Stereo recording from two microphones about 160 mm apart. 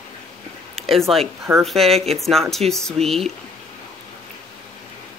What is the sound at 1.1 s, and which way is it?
A woman's voice, centre (ahead or behind).